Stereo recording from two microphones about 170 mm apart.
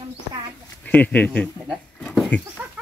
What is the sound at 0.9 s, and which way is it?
A man's voice, 10° left (ahead or behind).